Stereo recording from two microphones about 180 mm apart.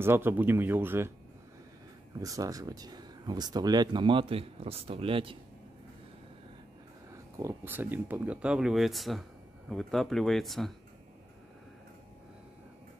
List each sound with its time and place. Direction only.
0.0 s speech: 10° right (ahead or behind)
2.1 s speech: 20° right (ahead or behind)
7.1 s speech: 15° right (ahead or behind); by 10.7 s centre (ahead or behind)